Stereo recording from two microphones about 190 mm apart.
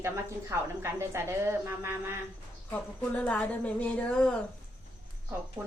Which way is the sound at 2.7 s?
5° left (ahead or behind).